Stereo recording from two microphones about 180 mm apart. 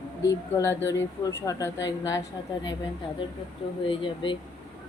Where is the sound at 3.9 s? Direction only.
30° left (ahead or behind).